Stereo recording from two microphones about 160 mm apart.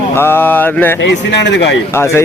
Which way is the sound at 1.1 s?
90° left.